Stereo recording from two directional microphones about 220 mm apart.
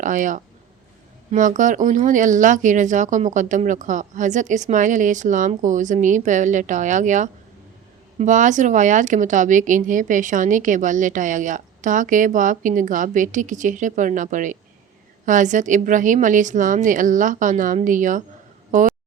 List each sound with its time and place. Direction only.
0.0 s speech: 35° right (ahead or behind)